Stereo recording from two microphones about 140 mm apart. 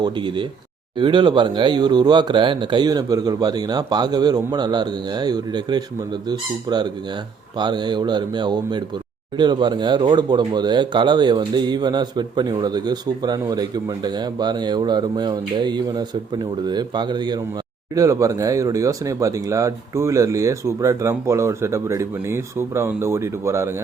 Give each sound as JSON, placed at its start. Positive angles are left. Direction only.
{"t": 0.0, "sound": "speech", "side_deg": -35}